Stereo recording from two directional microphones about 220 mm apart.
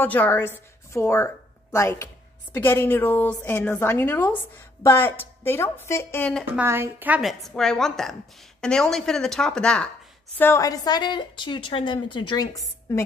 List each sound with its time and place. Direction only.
0.0 s a woman's voice: 10° left (ahead or behind)
6.5 s a woman's voice: 10° right (ahead or behind); by 13.0 s 15° left (ahead or behind)